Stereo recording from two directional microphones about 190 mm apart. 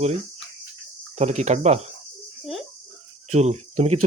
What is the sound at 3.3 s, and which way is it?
Speech, 35° right (ahead or behind).